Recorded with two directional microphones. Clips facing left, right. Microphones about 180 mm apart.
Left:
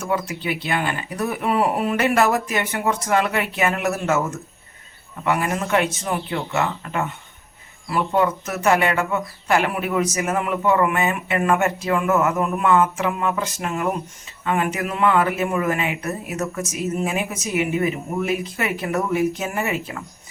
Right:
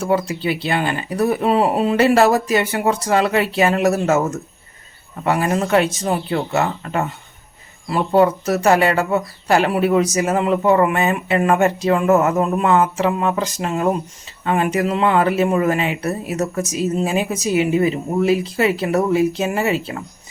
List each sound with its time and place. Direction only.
0.0 s speech: 30° right (ahead or behind)
5.2 s speech: 35° right (ahead or behind)